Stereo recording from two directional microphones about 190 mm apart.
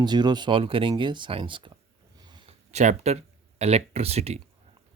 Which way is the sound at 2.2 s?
25° right (ahead or behind).